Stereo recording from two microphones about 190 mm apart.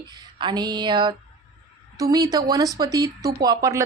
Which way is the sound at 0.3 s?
25° right (ahead or behind).